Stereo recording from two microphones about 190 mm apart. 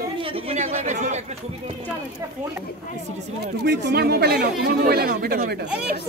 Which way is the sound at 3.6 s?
60° right (ahead or behind).